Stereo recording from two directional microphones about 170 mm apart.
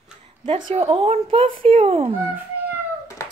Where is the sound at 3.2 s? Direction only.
15° left (ahead or behind).